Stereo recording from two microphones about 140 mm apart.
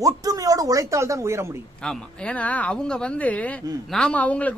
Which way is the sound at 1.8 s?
5° left (ahead or behind).